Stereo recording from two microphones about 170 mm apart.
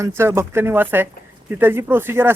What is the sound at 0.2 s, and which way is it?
Speech, 15° right (ahead or behind).